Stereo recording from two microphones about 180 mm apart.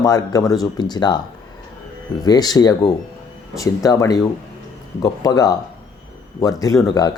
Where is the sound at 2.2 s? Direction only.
20° left (ahead or behind).